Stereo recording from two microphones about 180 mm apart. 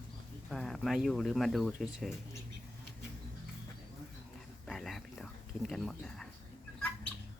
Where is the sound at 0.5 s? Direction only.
Centre (ahead or behind).